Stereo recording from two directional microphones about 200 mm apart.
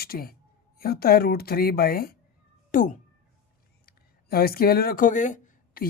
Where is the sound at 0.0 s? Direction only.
50° left (ahead or behind).